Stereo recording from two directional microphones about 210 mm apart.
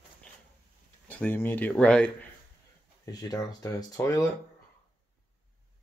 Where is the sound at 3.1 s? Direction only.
20° left (ahead or behind).